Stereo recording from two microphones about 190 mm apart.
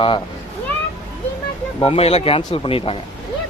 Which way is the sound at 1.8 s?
30° left (ahead or behind).